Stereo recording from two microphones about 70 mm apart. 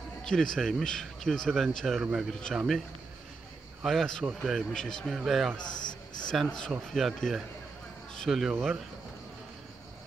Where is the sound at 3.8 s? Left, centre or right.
Centre.